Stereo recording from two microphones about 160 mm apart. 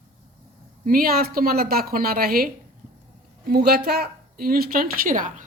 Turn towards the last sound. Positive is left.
turn(degrees=-55)  # may be behind; listen again after turning